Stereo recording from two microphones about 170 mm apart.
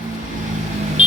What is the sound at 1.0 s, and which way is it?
Vehicle, 45° right (ahead or behind).